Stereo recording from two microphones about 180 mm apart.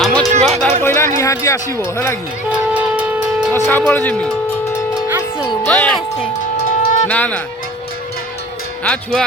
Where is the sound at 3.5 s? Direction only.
10° left (ahead or behind).